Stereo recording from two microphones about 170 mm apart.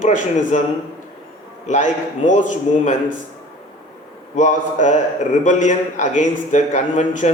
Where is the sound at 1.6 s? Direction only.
45° left (ahead or behind).